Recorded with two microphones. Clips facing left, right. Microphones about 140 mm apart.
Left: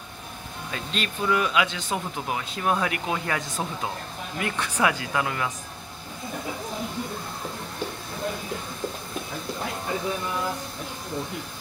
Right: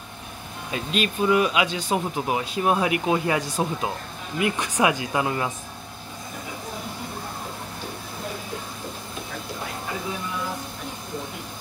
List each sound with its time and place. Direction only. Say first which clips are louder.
0.7 s speech: right 6 dB; 20° right (ahead or behind)